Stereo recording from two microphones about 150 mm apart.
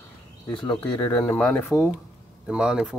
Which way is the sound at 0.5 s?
30° left (ahead or behind).